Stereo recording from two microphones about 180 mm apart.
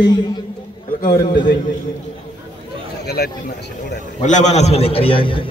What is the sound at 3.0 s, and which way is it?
Speech, 60° left (ahead or behind).